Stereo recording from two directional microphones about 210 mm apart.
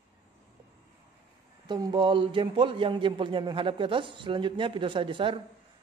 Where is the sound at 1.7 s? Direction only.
20° right (ahead or behind).